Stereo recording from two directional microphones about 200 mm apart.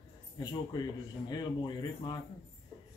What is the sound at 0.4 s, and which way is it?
Speech, 20° left (ahead or behind).